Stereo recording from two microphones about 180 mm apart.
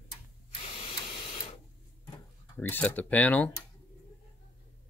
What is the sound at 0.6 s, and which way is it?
Printer, 30° left (ahead or behind).